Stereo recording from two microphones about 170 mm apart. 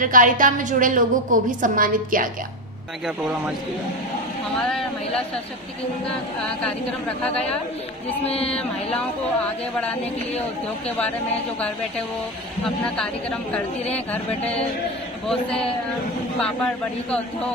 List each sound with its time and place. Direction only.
0.0 s a woman's voice: 50° right (ahead or behind)
4.6 s a man's voice: 5° left (ahead or behind)
8.3 s speech: 35° left (ahead or behind)
12.9 s a man's voice: 5° left (ahead or behind)
16.4 s a man's voice: 5° left (ahead or behind)